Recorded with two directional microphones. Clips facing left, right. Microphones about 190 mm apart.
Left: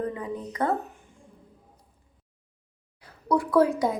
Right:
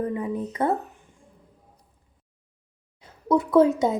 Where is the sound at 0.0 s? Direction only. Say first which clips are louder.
Right 4 dB; 25° right (ahead or behind).